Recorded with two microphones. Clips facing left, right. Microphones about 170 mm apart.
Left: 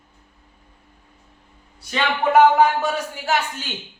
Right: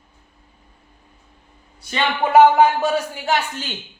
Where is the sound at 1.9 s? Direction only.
5° right (ahead or behind).